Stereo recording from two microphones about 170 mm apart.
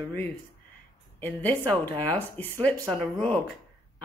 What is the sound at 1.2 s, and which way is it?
Speech, 10° left (ahead or behind).